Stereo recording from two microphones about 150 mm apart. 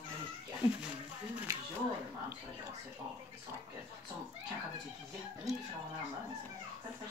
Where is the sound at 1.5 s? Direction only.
20° right (ahead or behind).